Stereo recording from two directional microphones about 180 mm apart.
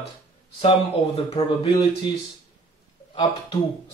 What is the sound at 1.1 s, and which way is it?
Speech, 35° left (ahead or behind).